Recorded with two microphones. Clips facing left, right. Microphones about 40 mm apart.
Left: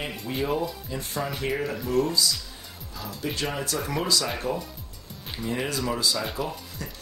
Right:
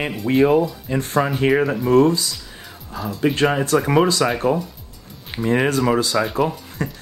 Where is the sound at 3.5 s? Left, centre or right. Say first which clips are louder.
Right 12 dB; right.